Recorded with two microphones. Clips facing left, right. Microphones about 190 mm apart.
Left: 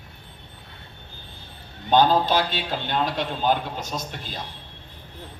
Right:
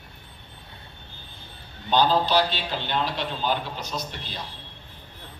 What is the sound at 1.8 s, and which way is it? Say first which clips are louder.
A man's voice: left 3 dB; 50° left (ahead or behind).